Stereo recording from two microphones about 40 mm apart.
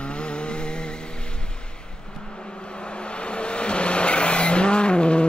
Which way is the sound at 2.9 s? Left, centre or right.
Left.